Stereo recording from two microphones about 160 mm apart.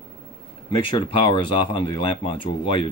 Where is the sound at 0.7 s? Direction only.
35° left (ahead or behind).